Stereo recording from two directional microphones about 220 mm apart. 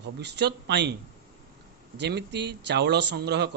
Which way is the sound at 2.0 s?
50° right (ahead or behind).